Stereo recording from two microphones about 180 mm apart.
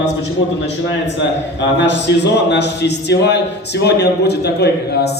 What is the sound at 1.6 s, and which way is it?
A man's voice, 75° left (ahead or behind).